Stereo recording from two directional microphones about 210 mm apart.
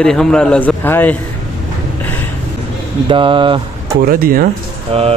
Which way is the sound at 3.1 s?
25° right (ahead or behind).